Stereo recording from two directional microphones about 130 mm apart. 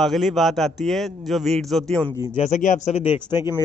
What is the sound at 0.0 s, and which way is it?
A man's voice, centre (ahead or behind).